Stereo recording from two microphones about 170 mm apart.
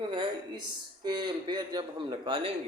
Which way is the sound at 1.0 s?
25° right (ahead or behind).